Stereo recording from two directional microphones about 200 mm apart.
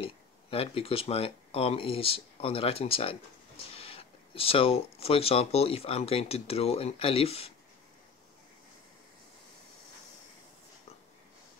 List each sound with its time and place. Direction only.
0.0 s speech: 25° left (ahead or behind)